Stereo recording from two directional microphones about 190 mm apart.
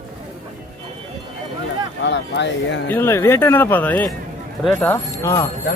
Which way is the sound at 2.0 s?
70° left (ahead or behind).